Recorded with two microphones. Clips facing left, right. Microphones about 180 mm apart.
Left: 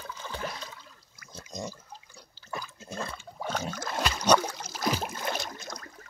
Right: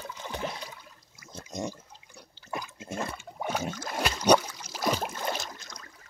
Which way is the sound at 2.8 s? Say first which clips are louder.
Right 3 dB; 15° right (ahead or behind).